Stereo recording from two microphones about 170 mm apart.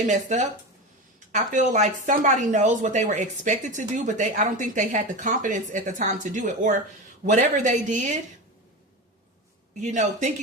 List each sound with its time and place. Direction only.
0.0 s speech: 45° right (ahead or behind)
9.8 s speech: 45° right (ahead or behind)